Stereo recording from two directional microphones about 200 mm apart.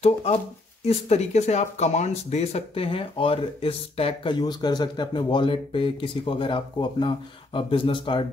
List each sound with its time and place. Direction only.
0.0 s speech: 30° left (ahead or behind)